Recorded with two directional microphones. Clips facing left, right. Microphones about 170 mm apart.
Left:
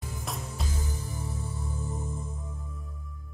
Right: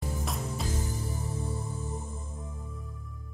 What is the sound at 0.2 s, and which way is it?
Music, centre (ahead or behind).